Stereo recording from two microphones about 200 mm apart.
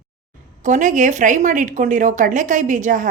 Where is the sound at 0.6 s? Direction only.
40° right (ahead or behind).